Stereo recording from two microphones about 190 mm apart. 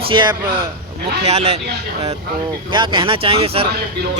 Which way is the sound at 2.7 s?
25° right (ahead or behind).